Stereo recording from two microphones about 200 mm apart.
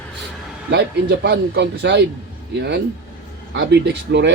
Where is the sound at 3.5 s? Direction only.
60° right (ahead or behind).